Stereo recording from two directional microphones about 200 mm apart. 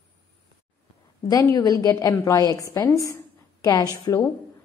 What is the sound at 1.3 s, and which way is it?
A woman's voice, 15° left (ahead or behind).